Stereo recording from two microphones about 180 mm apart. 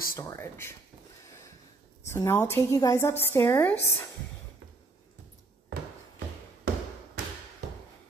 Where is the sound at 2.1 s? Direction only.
15° left (ahead or behind).